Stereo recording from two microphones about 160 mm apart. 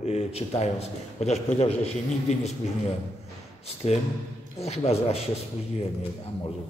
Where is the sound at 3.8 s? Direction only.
45° left (ahead or behind).